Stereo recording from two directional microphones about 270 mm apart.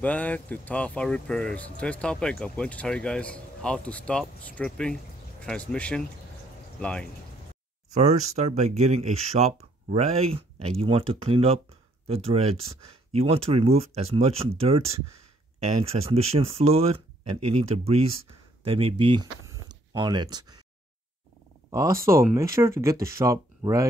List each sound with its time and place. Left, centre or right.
0.0 s speech: centre
7.9 s speech: right
21.6 s speech: centre